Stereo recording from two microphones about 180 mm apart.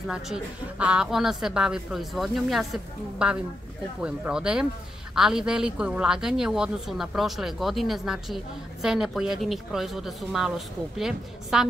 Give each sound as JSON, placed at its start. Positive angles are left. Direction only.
{"t": 0.0, "sound": "a woman's voice", "side_deg": -5}